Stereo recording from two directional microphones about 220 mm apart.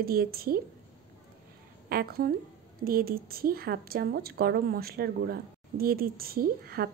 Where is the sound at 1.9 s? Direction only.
45° right (ahead or behind).